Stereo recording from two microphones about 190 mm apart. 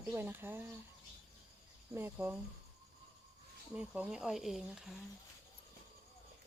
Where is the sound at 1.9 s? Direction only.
10° right (ahead or behind).